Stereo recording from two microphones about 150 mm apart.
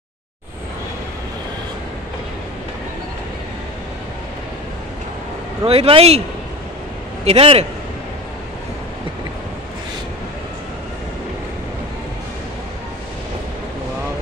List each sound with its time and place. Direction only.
5.7 s speech: 40° right (ahead or behind)
7.2 s speech: 40° right (ahead or behind)